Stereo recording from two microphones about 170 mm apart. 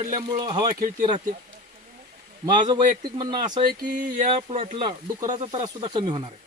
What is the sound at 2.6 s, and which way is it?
Speech, 25° right (ahead or behind).